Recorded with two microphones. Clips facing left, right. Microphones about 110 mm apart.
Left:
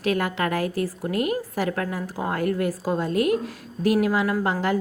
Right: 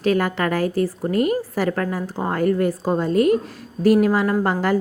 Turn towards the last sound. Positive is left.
turn(degrees=-40)  # may be behind; listen again after turning